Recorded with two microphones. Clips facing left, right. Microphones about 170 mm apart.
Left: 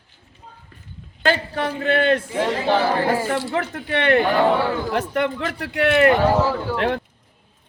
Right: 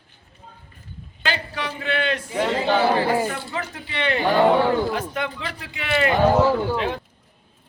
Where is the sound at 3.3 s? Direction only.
75° left (ahead or behind).